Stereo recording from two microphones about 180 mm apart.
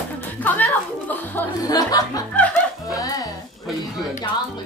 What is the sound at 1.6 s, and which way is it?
Speech, 20° left (ahead or behind).